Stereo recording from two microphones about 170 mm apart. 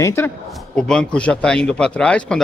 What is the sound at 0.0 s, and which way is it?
Speech, 15° left (ahead or behind).